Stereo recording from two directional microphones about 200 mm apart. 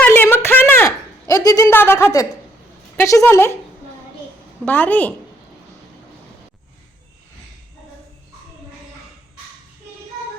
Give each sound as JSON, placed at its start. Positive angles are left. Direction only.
{"t": 0.0, "sound": "a sound", "side_deg": 10}
{"t": 1.3, "sound": "a woman's voice", "side_deg": 20}
{"t": 4.6, "sound": "speech", "side_deg": 10}